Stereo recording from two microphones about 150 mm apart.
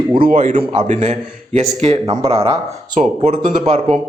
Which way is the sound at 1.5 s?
45° right (ahead or behind).